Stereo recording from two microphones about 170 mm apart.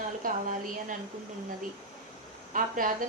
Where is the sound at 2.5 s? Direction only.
55° right (ahead or behind).